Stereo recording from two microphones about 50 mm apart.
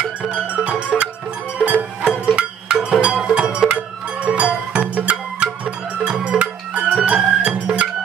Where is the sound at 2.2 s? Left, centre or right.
Right.